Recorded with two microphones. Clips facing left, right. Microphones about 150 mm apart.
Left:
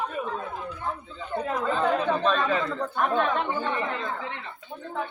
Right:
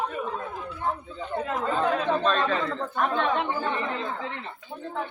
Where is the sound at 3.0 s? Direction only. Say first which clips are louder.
Even; centre (ahead or behind).